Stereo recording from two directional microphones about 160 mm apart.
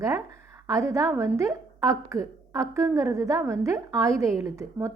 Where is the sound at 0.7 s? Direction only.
20° right (ahead or behind).